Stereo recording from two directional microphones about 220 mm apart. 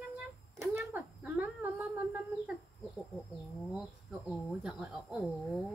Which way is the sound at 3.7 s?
Centre (ahead or behind).